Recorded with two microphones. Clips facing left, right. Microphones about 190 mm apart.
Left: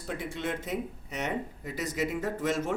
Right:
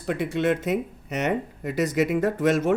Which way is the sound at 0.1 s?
75° right (ahead or behind).